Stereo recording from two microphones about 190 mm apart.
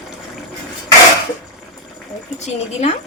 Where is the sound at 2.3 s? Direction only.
35° left (ahead or behind).